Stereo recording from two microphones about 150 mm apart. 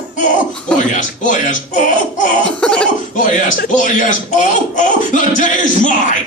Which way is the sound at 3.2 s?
60° left (ahead or behind).